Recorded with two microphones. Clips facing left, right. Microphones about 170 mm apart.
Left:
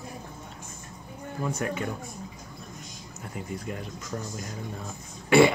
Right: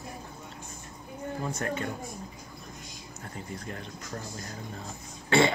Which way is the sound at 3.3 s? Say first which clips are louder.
Left 4 dB; 10° left (ahead or behind).